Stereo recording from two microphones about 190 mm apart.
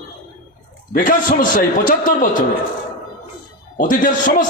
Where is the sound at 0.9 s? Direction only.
45° left (ahead or behind).